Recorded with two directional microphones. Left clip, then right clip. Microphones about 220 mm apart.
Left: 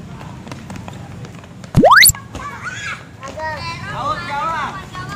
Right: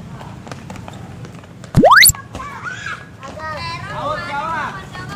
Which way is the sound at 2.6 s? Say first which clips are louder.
Left 1 dB; 45° left (ahead or behind).